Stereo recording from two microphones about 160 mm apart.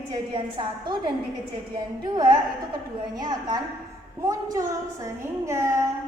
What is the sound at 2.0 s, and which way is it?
A woman's voice, 25° right (ahead or behind).